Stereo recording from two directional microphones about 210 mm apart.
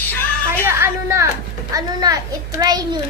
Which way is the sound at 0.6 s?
15° right (ahead or behind).